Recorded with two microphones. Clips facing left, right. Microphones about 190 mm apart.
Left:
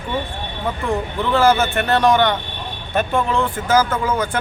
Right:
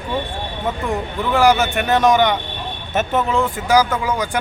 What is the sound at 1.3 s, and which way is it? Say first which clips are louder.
Speech: right 1 dB; 15° right (ahead or behind).